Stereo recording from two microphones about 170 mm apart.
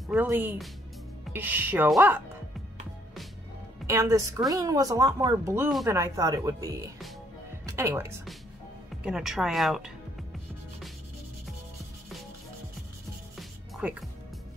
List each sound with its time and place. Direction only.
0.1 s speech: 10° right (ahead or behind)
3.8 s speech: 15° right (ahead or behind)
9.0 s speech: 5° right (ahead or behind)
13.4 s music: 5° right (ahead or behind)